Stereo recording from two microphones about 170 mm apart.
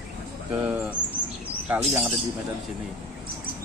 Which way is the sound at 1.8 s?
5° right (ahead or behind).